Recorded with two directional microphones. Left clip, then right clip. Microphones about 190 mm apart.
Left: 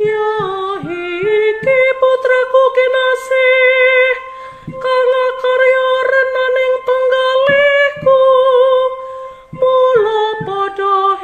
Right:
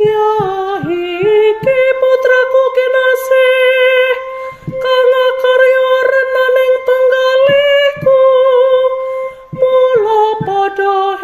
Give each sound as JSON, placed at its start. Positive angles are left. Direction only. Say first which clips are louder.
{"t": 0.0, "sound": "music", "louder": "right 4 dB", "side_deg": -5}
{"t": 1.3, "sound": "humming", "louder": "right 2 dB", "side_deg": -5}
{"t": 4.8, "sound": "music", "louder": "right 3 dB", "side_deg": 0}